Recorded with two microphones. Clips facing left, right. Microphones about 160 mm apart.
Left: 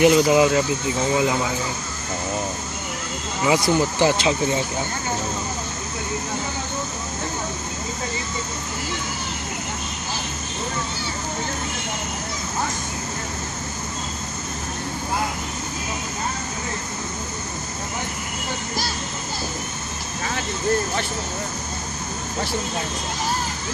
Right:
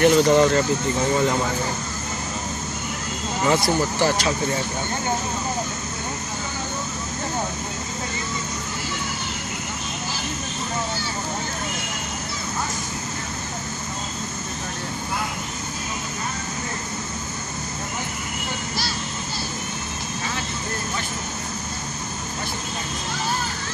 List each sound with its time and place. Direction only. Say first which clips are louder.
0.0 s speech: even; 5° left (ahead or behind)
3.4 s speech: left 2 dB; 15° left (ahead or behind)